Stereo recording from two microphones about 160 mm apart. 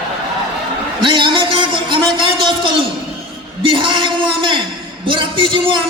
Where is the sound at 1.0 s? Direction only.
30° right (ahead or behind).